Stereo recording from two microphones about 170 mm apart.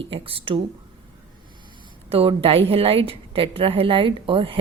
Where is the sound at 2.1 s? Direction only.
35° right (ahead or behind).